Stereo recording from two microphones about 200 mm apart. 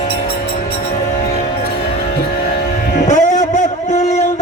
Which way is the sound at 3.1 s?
35° left (ahead or behind).